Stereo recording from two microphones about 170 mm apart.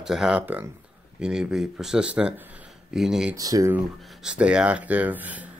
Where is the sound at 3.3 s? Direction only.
20° right (ahead or behind).